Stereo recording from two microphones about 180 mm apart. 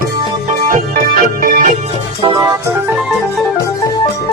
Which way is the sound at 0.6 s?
45° right (ahead or behind).